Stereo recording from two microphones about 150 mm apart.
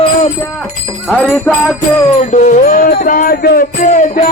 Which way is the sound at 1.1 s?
5° left (ahead or behind).